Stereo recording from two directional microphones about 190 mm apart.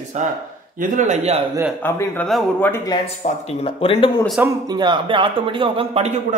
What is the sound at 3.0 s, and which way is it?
Speech, 30° left (ahead or behind).